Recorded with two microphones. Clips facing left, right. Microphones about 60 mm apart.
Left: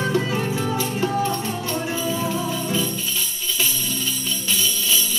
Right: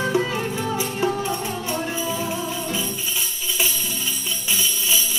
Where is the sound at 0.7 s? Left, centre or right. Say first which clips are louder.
Even; centre.